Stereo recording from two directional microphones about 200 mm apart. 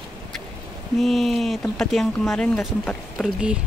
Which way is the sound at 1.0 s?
Centre (ahead or behind).